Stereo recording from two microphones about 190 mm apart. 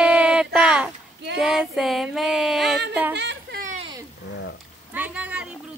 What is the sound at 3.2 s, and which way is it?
Whimper, 60° right (ahead or behind).